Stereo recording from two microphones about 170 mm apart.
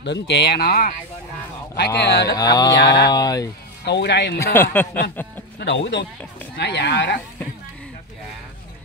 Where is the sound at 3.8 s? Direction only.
85° left.